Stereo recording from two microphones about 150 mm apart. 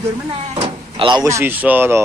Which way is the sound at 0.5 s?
40° right (ahead or behind).